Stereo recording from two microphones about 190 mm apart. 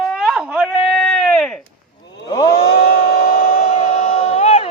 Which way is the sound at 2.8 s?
50° left (ahead or behind).